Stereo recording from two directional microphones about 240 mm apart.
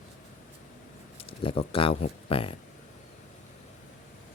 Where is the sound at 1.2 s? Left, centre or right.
Left.